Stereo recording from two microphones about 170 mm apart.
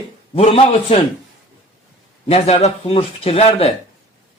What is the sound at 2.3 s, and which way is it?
A man's voice, 35° left (ahead or behind).